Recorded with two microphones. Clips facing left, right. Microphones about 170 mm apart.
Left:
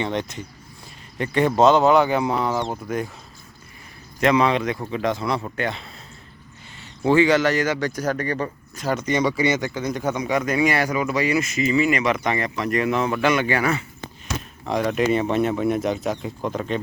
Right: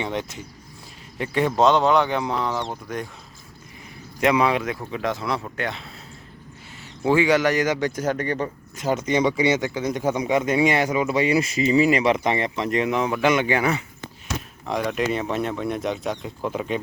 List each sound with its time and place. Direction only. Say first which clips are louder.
0.0 s speech: left 2 dB; 5° right (ahead or behind)
4.2 s speech: left 1 dB; 10° right (ahead or behind)
7.0 s speech: left 2 dB; 10° right (ahead or behind)
14.7 s speech: left 3 dB; centre (ahead or behind)